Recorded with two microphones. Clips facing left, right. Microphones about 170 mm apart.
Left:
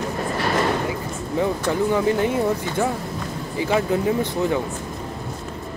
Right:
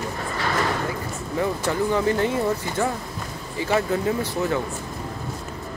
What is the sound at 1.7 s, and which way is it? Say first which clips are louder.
Speech: left 1 dB; 15° left (ahead or behind).